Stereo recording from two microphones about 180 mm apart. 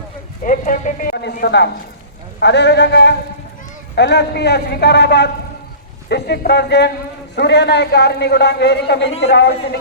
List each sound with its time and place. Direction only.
0.4 s a man's voice: 45° left (ahead or behind); by 9.6 s 70° left (ahead or behind)